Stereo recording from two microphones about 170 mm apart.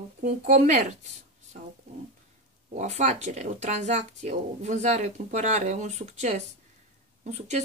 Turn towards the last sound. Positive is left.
turn(degrees=-45)  # may be behind; listen again after turning